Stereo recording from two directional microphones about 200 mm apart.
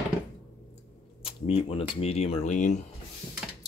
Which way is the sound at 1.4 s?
30° left (ahead or behind).